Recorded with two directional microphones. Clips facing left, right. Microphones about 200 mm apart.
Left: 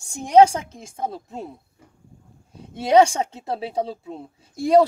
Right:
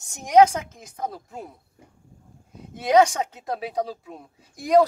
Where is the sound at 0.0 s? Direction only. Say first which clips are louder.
Left 2 dB; 30° left (ahead or behind).